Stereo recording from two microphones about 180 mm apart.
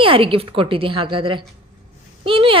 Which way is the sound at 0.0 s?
30° right (ahead or behind).